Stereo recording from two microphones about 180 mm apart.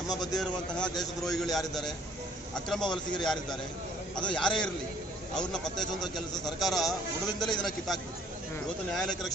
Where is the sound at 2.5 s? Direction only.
5° left (ahead or behind).